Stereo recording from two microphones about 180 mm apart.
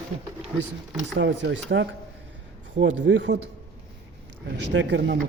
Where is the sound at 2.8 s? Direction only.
90° right.